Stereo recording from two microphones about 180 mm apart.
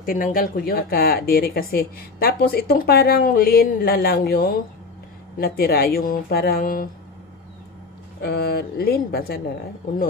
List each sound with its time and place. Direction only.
0.0 s speech: 50° left (ahead or behind)
8.2 s speech: 60° left (ahead or behind)